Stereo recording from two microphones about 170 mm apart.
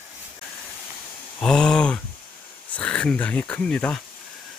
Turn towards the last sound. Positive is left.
turn(degrees=5)  # may be behind; listen again after turning